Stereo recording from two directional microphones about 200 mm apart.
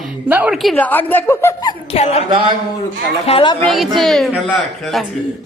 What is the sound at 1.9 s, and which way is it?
Speech, 30° left (ahead or behind).